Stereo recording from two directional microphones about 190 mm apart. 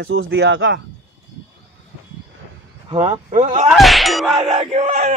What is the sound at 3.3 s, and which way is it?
Speech, 40° right (ahead or behind).